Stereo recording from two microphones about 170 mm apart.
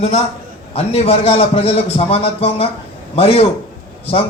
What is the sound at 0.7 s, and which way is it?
A man's voice, 35° left (ahead or behind).